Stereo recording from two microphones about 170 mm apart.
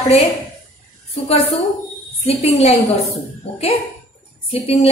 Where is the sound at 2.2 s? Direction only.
40° left (ahead or behind).